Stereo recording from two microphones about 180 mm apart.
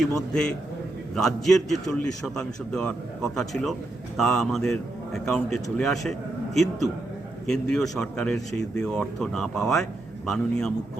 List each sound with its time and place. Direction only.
1.1 s a man's voice: centre (ahead or behind)